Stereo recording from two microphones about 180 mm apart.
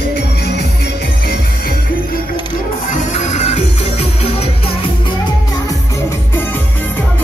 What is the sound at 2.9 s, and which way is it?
Music, 40° left (ahead or behind).